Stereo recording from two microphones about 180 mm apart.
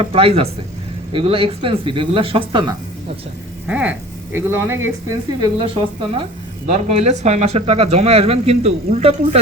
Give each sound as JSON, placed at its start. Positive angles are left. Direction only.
{"t": 0.0, "sound": "speech", "side_deg": -30}
{"t": 3.7, "sound": "speech", "side_deg": -10}
{"t": 6.7, "sound": "speech", "side_deg": -40}